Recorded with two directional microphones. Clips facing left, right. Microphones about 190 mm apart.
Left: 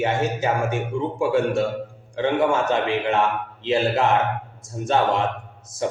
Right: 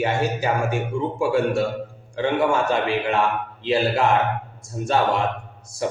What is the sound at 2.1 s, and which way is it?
A man's voice, 20° left (ahead or behind).